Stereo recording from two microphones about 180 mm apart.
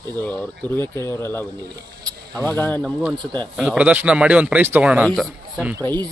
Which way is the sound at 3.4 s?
Centre (ahead or behind).